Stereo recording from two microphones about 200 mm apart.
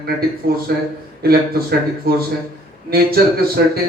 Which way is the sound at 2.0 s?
50° right (ahead or behind).